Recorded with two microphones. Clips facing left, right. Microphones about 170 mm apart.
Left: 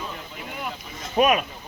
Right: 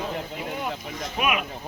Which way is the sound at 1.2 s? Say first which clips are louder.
Left 7 dB; 35° left (ahead or behind).